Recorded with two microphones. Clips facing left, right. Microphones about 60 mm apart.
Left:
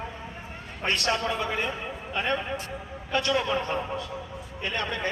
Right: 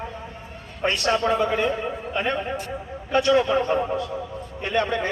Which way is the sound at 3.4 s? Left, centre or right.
Centre.